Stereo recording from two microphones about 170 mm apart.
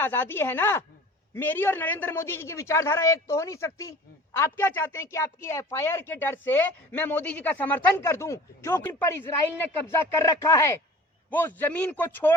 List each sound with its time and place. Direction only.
0.0 s a woman's voice: 10° left (ahead or behind)